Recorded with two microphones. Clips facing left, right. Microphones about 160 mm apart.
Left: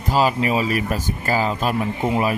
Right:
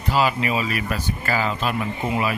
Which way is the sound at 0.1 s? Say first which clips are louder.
Left 2 dB; 40° left (ahead or behind).